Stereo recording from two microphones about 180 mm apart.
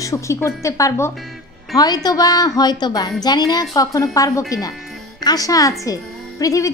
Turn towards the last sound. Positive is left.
turn(degrees=20)  # may be behind; listen again after turning